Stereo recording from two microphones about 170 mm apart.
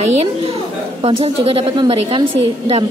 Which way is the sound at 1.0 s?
35° right (ahead or behind).